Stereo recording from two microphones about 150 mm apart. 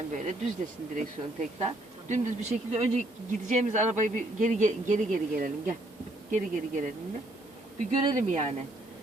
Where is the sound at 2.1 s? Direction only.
50° right (ahead or behind).